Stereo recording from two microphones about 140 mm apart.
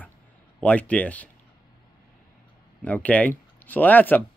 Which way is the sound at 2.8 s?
10° left (ahead or behind).